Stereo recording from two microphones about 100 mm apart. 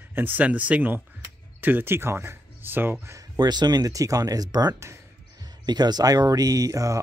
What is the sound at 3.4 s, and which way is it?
Speech, 45° right (ahead or behind).